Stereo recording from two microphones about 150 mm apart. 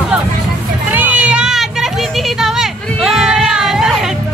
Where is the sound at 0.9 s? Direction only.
10° right (ahead or behind).